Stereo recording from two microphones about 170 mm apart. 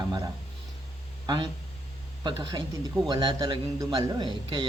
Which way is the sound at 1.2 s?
25° right (ahead or behind).